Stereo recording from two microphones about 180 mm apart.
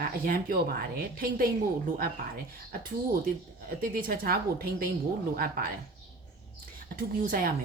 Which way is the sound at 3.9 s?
55° right (ahead or behind).